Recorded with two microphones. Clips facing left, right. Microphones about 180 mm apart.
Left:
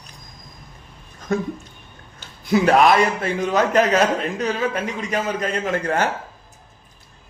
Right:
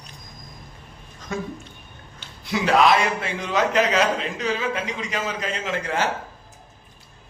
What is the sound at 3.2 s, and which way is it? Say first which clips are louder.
A man's voice: left 4 dB; 45° left (ahead or behind).